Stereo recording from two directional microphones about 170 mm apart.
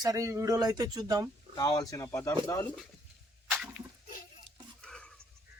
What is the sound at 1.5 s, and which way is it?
Speech, 25° left (ahead or behind).